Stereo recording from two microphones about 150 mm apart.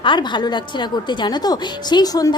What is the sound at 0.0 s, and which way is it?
A woman's voice, 30° left (ahead or behind).